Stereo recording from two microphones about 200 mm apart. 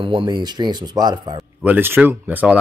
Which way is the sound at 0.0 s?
25° right (ahead or behind).